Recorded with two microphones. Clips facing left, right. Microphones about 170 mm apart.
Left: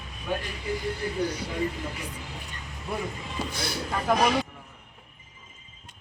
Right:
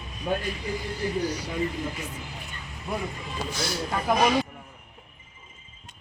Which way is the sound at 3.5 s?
55° left (ahead or behind).